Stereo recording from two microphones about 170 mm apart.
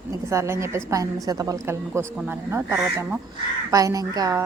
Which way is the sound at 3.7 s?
20° right (ahead or behind).